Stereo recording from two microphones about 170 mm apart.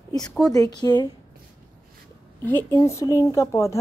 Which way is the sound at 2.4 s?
15° left (ahead or behind).